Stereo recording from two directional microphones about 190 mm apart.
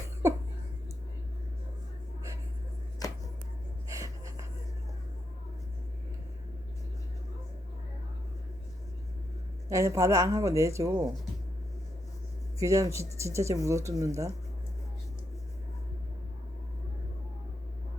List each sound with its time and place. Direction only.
3.0 s a sound: 20° left (ahead or behind)
3.9 s gasp: 15° right (ahead or behind)
9.6 s speech: 15° right (ahead or behind)
12.5 s speech: 15° right (ahead or behind)